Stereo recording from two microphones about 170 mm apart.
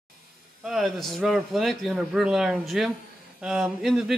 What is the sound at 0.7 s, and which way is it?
Speech, centre (ahead or behind).